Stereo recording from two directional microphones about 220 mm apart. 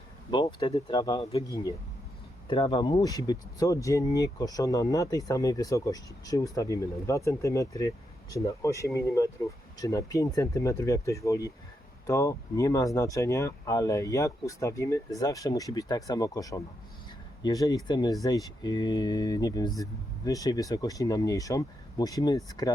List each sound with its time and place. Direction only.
0.3 s speech: 20° left (ahead or behind)